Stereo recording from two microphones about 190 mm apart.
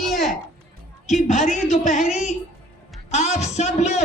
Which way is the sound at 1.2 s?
40° left (ahead or behind).